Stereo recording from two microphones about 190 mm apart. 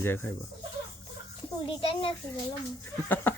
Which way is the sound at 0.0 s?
10° left (ahead or behind).